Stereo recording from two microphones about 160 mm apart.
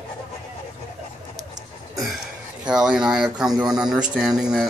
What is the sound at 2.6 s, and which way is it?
Speech, 5° right (ahead or behind).